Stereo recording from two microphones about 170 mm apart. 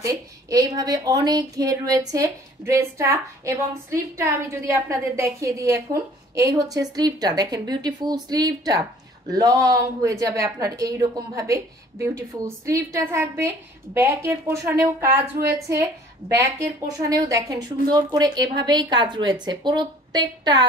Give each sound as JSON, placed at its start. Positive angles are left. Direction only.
{"t": 0.0, "sound": "a woman's voice", "side_deg": -20}
{"t": 17.1, "sound": "a woman's voice", "side_deg": -20}